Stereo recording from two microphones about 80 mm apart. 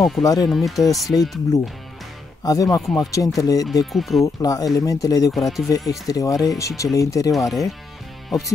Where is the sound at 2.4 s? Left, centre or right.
Left.